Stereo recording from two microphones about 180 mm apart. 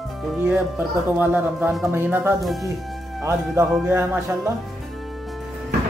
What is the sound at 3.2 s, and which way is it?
Speech, 15° right (ahead or behind).